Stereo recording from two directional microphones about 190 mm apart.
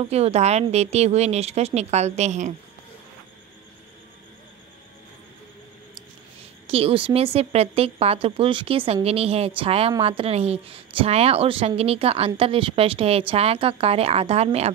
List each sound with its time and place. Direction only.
0.1 s speech: 35° right (ahead or behind)
6.7 s speech: 30° right (ahead or behind)